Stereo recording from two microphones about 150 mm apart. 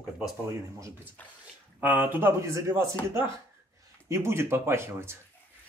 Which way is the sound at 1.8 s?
10° right (ahead or behind).